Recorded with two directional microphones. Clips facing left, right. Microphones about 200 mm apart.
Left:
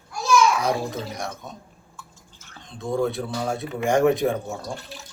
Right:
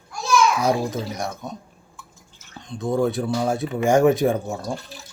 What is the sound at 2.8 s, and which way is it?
Speech, 5° right (ahead or behind).